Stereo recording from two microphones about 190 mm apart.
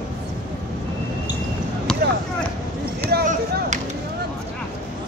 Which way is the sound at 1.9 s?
5° left (ahead or behind).